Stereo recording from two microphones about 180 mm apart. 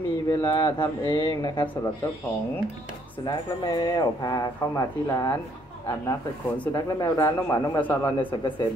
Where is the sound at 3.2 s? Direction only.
20° left (ahead or behind).